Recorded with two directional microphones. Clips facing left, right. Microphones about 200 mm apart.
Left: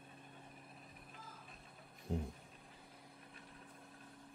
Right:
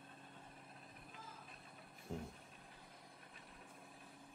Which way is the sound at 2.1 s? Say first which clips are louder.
Left 6 dB; 20° left (ahead or behind).